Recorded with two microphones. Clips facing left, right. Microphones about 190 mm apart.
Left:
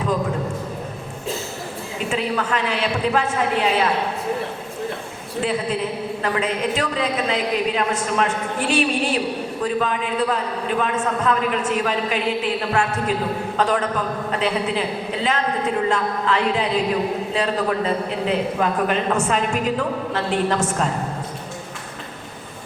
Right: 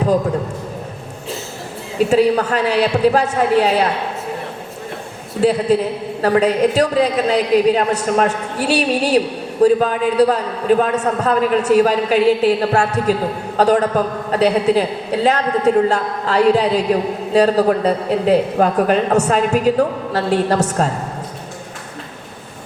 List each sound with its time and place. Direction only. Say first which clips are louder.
2.0 s a woman's voice: right 8 dB; 40° right (ahead or behind)
5.4 s a woman's voice: right 8 dB; 40° right (ahead or behind)